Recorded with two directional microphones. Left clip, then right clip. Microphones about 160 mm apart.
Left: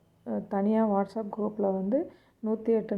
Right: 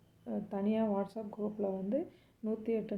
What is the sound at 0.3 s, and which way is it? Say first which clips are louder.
Speech: left 7 dB; 30° left (ahead or behind).